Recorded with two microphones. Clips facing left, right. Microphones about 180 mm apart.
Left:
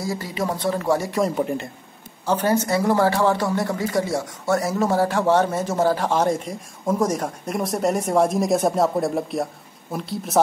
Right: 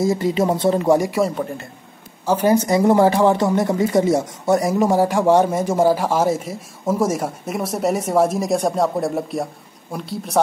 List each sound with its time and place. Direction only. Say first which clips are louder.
0.0 s speech: right 8 dB; 20° right (ahead or behind)
2.2 s a woman's voice: right 4 dB; 10° right (ahead or behind)